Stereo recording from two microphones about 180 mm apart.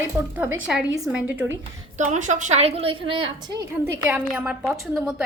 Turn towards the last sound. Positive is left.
turn(degrees=0)  # may be behind; listen again after turning